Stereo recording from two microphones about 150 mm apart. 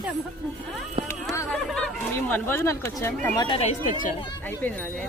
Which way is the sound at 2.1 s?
15° left (ahead or behind).